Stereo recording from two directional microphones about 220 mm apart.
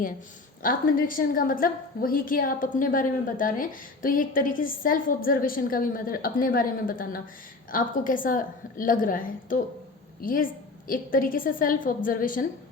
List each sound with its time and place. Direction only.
0.6 s a woman's voice: 40° left (ahead or behind)